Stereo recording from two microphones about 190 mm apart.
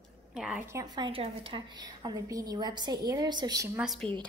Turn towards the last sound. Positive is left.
turn(degrees=0)  # may be behind; listen again after turning